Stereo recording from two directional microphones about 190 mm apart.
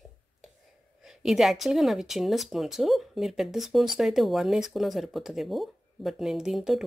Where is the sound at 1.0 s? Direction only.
Centre (ahead or behind).